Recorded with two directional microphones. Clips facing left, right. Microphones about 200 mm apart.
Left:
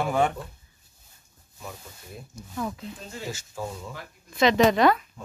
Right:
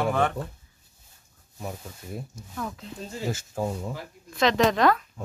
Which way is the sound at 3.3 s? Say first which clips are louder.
Right 6 dB; 50° right (ahead or behind).